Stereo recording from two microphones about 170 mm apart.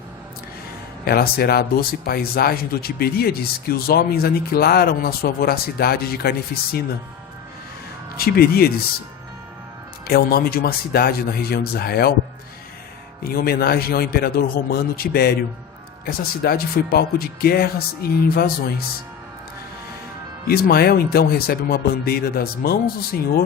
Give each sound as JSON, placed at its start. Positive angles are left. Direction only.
{"t": 1.0, "sound": "speech", "side_deg": 65}
{"t": 8.1, "sound": "speech", "side_deg": 65}
{"t": 10.1, "sound": "speech", "side_deg": 65}
{"t": 13.2, "sound": "speech", "side_deg": 60}
{"t": 20.5, "sound": "speech", "side_deg": 65}